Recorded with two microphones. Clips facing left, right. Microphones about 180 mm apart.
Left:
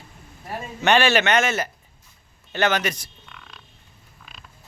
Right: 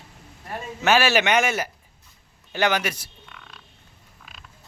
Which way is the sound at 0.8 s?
5° right (ahead or behind).